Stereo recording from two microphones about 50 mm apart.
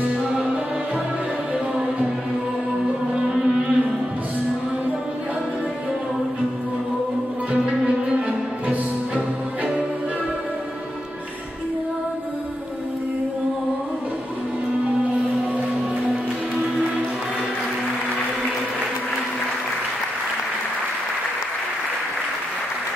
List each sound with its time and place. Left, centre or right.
0.2 s music: centre
3.2 s music: centre
7.5 s music: right